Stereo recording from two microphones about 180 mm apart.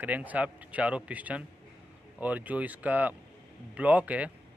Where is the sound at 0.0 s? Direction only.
10° right (ahead or behind).